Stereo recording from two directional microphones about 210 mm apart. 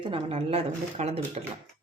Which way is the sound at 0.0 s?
25° right (ahead or behind).